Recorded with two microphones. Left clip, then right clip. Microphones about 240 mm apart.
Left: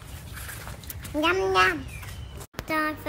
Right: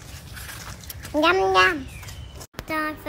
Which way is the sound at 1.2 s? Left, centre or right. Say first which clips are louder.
Right 4 dB; right.